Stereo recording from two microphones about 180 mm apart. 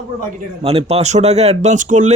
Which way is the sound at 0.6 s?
35° right (ahead or behind).